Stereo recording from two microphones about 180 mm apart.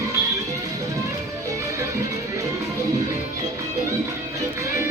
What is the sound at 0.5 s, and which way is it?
Music, 20° right (ahead or behind).